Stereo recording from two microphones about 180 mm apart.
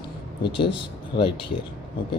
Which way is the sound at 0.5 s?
30° left (ahead or behind).